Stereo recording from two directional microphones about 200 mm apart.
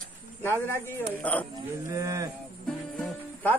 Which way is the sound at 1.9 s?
15° right (ahead or behind).